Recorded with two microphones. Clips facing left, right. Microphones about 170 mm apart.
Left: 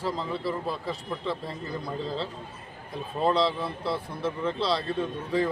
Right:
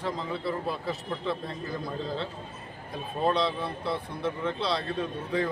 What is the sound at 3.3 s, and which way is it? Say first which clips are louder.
Speech: left 2 dB; 30° left (ahead or behind).